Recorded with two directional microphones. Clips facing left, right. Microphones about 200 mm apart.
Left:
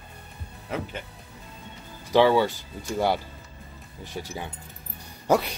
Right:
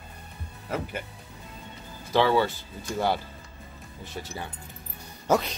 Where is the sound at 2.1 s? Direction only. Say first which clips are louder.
Left 3 dB; 15° left (ahead or behind).